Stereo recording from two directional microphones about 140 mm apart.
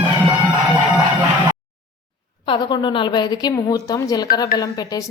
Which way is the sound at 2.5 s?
30° left (ahead or behind).